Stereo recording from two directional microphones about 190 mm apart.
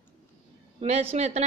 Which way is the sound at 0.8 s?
35° right (ahead or behind).